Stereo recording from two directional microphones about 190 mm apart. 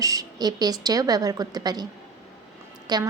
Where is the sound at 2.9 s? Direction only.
20° right (ahead or behind).